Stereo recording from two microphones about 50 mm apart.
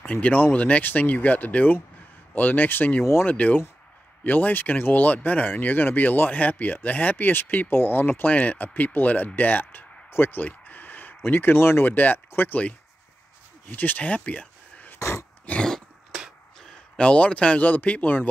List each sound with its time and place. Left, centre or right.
0.0 s speech: left
11.9 s speech: left
13.7 s speech: left
15.0 s dog: left
15.5 s throat clearing: left
16.5 s a sound: centre
17.0 s speech: left